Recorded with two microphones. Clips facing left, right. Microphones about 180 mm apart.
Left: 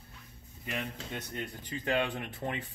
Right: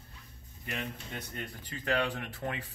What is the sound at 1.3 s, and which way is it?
Speech, 20° left (ahead or behind).